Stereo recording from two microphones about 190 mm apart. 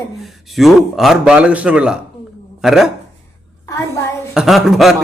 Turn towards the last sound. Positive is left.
turn(degrees=0)  # may be behind; listen again after turning